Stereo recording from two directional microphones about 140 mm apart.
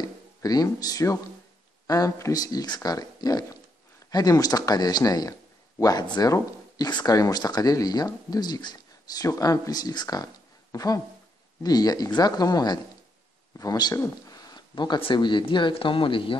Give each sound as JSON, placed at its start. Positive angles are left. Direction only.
{"t": 0.0, "sound": "speech", "side_deg": 25}